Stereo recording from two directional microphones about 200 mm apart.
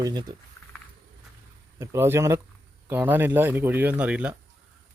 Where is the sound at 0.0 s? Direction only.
20° right (ahead or behind).